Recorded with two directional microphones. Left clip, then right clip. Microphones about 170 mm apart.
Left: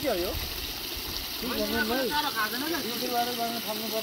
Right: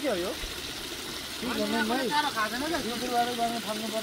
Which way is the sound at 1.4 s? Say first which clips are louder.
Even; centre (ahead or behind).